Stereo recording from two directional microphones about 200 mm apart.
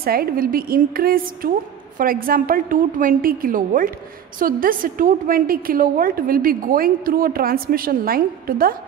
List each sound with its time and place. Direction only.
0.0 s a woman's voice: 50° right (ahead or behind)